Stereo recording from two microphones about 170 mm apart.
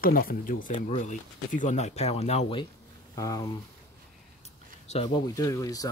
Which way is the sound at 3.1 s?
20° left (ahead or behind).